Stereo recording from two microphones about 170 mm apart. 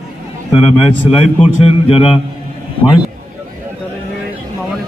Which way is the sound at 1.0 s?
35° left (ahead or behind).